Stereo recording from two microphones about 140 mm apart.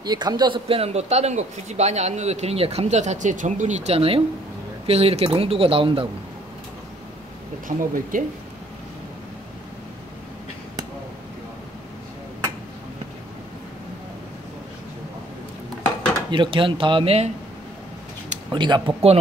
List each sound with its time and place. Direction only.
0.0 s speech: 30° right (ahead or behind)
0.7 s speech: 45° right (ahead or behind)
7.6 s speech: 75° right (ahead or behind)
16.3 s speech: 35° right (ahead or behind)
18.5 s speech: 35° right (ahead or behind)